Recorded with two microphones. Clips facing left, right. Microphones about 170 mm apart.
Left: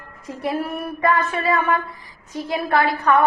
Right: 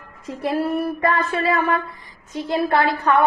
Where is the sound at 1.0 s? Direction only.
25° right (ahead or behind).